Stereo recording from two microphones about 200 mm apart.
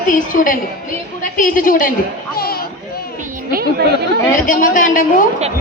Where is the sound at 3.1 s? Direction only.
45° right (ahead or behind).